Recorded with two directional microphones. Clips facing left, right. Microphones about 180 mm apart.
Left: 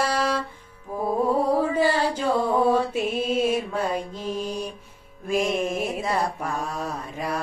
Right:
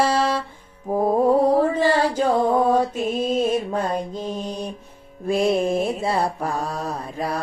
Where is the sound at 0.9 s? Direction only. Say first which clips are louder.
Right 8 dB; 45° right (ahead or behind).